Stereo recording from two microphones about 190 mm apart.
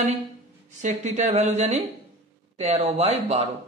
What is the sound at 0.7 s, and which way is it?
Speech, 40° right (ahead or behind).